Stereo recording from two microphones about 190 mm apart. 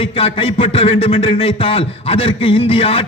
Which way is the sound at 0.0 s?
30° left (ahead or behind).